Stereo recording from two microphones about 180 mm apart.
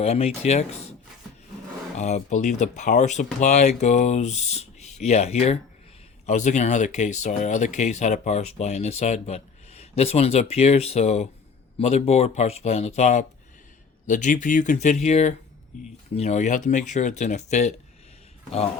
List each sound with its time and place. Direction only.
0.0 s speech: 35° left (ahead or behind)
2.0 s speech: 40° left (ahead or behind)